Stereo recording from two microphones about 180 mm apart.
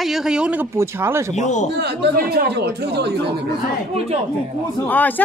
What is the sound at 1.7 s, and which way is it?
Speech, 65° right (ahead or behind).